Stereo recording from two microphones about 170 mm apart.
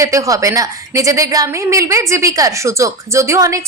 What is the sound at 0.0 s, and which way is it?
A woman's voice, 20° right (ahead or behind).